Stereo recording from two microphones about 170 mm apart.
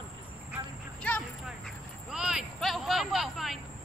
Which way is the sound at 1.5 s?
5° right (ahead or behind).